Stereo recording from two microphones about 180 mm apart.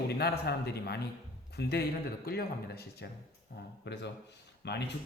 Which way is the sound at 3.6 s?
75° left (ahead or behind).